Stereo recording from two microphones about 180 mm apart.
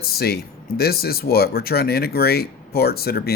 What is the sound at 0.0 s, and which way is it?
Speech, 60° left (ahead or behind).